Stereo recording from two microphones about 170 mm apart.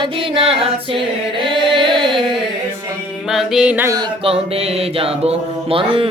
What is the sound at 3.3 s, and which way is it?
Music, centre (ahead or behind).